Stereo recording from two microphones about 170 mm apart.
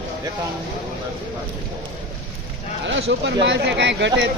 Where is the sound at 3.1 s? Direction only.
80° right.